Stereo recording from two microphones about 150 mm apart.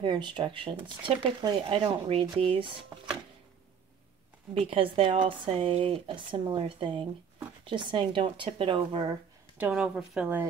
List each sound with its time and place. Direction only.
0.0 s speech: 30° right (ahead or behind)
4.6 s speech: 35° right (ahead or behind)
9.6 s speech: 5° right (ahead or behind)